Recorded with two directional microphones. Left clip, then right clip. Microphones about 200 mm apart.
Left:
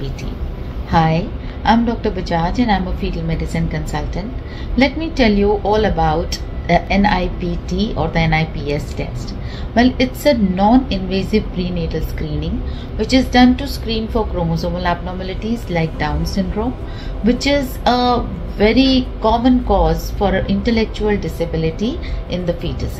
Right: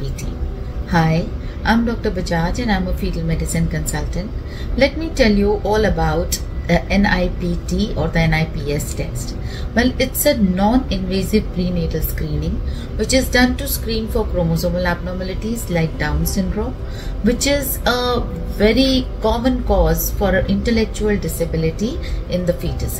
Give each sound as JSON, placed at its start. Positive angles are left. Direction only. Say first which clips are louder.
{"t": 0.8, "sound": "a woman's voice", "louder": "left 3 dB", "side_deg": -15}
{"t": 17.3, "sound": "a woman's voice", "louder": "left 2 dB", "side_deg": -20}